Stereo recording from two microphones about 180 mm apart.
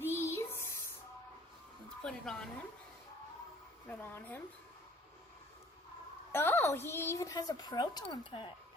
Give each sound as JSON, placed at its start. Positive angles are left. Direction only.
{"t": 0.0, "sound": "a sound", "side_deg": 15}
{"t": 2.0, "sound": "speech", "side_deg": 5}
{"t": 3.8, "sound": "a woman's voice", "side_deg": 10}
{"t": 6.3, "sound": "a woman's voice", "side_deg": 10}